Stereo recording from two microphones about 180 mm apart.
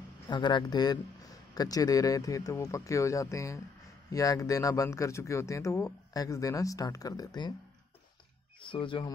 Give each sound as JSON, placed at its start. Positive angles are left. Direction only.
{"t": 0.3, "sound": "speech", "side_deg": 25}
{"t": 8.6, "sound": "speech", "side_deg": 25}